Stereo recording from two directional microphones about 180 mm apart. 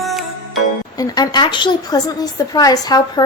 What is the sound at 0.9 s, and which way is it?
A woman's voice, 20° left (ahead or behind).